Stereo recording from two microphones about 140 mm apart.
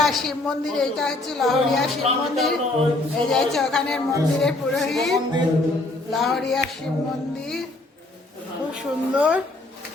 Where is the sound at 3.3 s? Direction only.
5° left (ahead or behind).